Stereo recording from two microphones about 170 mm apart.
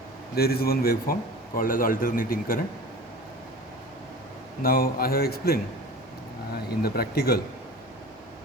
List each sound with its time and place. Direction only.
0.3 s a man's voice: 65° left (ahead or behind)
4.6 s a man's voice: 60° left (ahead or behind)
6.7 s a man's voice: 65° left (ahead or behind)